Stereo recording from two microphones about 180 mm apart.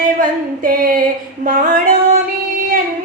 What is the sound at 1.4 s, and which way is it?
Female singing, 50° right (ahead or behind).